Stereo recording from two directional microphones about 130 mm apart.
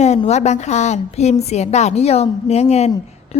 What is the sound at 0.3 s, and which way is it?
A woman's voice, 60° left (ahead or behind).